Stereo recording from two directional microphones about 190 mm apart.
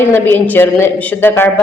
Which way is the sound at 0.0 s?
10° left (ahead or behind).